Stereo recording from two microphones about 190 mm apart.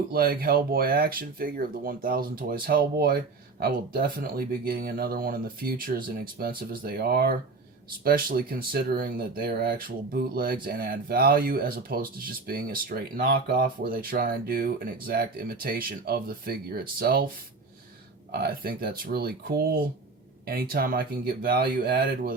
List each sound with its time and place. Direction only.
0.1 s speech: 50° right (ahead or behind)
18.3 s speech: 55° right (ahead or behind)